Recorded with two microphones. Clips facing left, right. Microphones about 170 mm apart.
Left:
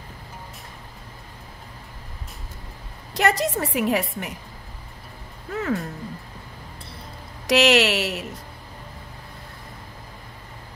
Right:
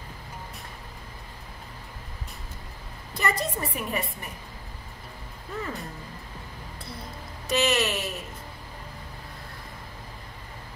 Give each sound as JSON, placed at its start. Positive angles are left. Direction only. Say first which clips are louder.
{"t": 3.2, "sound": "a woman's voice", "louder": "left 6 dB", "side_deg": 80}
{"t": 5.5, "sound": "speech", "louder": "left 8 dB", "side_deg": 75}
{"t": 7.4, "sound": "a woman's voice", "louder": "left 7 dB", "side_deg": 80}